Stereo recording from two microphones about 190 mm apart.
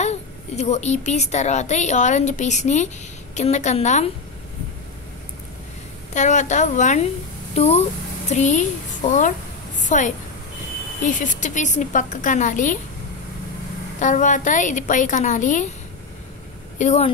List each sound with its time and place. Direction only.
0.0 s a woman's voice: 35° left (ahead or behind)
6.1 s a woman's voice: 40° left (ahead or behind)
13.9 s a woman's voice: 40° left (ahead or behind)
16.7 s speech: 35° left (ahead or behind)